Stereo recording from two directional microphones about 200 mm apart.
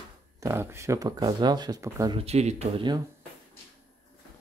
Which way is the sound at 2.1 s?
30° right (ahead or behind).